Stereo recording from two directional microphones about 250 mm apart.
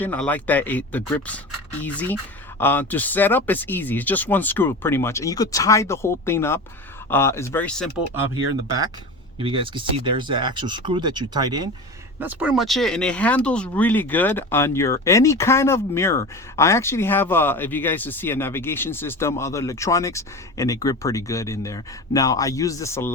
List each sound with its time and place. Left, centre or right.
0.0 s speech: centre
9.4 s speech: centre
12.2 s speech: centre